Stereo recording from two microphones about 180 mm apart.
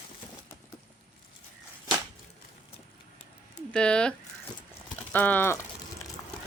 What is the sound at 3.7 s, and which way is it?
Speech, 5° left (ahead or behind).